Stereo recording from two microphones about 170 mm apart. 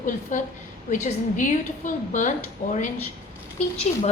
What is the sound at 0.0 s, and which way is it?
A woman's voice, 50° left (ahead or behind).